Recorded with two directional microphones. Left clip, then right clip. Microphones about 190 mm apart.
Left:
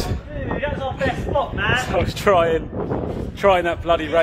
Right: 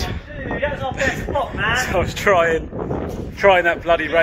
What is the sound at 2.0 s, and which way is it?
A man's voice, 5° left (ahead or behind).